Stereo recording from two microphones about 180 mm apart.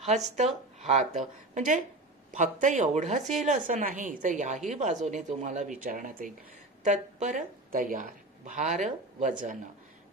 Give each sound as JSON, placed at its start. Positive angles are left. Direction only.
{"t": 0.0, "sound": "a woman's voice", "side_deg": -40}